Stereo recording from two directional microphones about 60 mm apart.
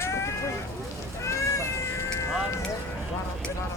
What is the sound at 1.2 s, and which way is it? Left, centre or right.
Cat, left.